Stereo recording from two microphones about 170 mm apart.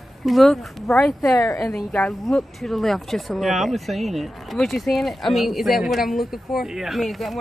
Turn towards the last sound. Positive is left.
turn(degrees=0)  # may be behind; listen again after turning